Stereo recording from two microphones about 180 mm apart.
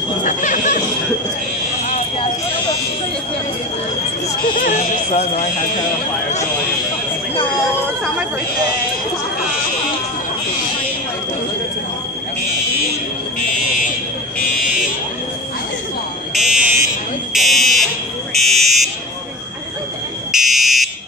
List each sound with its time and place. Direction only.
0.2 s a sound: 45° left (ahead or behind)
1.9 s fire alarm: 35° left (ahead or behind)
4.6 s speech: 50° left (ahead or behind)
16.3 s buzzer: 5° right (ahead or behind)
18.3 s fire alarm: centre (ahead or behind)
20.2 s fire alarm: centre (ahead or behind)